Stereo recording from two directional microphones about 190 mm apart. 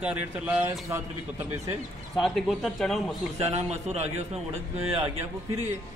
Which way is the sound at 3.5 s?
35° right (ahead or behind).